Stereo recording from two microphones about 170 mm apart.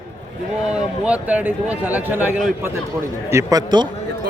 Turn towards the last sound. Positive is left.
turn(degrees=-25)  # may be behind; listen again after turning